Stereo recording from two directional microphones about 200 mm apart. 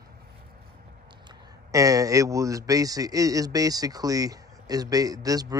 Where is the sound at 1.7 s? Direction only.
15° right (ahead or behind).